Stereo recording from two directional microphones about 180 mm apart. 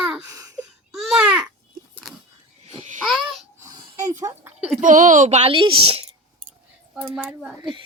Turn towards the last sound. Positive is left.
turn(degrees=0)  # may be behind; listen again after turning